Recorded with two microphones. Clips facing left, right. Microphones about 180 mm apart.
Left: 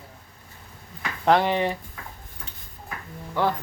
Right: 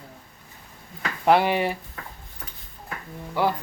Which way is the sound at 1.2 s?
10° right (ahead or behind).